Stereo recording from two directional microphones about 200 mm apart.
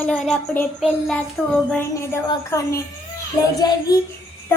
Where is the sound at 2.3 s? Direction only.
15° left (ahead or behind).